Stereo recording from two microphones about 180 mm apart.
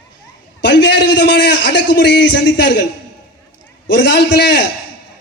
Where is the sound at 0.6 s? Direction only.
75° left (ahead or behind).